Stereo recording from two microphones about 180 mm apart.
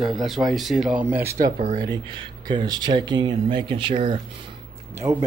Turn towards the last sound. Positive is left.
turn(degrees=-30)  # may be behind; listen again after turning